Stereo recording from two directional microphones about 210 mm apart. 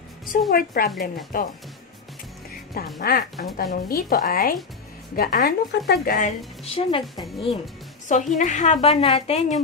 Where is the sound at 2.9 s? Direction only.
45° left (ahead or behind).